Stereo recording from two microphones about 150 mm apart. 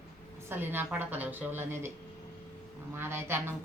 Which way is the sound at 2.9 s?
15° right (ahead or behind).